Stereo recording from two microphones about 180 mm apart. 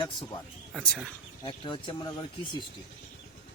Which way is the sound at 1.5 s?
25° left (ahead or behind).